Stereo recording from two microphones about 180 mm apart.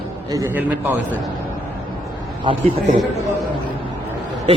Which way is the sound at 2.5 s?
30° right (ahead or behind).